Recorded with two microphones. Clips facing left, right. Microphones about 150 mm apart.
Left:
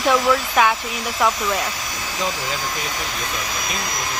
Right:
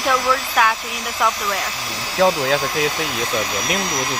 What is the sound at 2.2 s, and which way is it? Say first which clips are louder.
Speech: right 10 dB; 70° right (ahead or behind).